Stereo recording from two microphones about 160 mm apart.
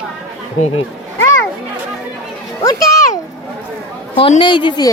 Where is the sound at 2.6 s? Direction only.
20° left (ahead or behind).